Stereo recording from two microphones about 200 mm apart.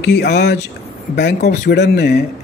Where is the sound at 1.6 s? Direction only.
60° left (ahead or behind).